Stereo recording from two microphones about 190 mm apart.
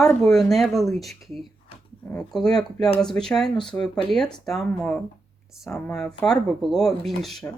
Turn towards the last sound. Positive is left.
turn(degrees=0)  # may be behind; listen again after turning